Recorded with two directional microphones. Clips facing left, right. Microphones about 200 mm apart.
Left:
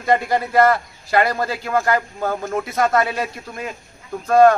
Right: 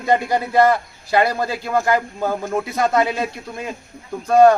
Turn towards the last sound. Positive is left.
turn(degrees=-15)  # may be behind; listen again after turning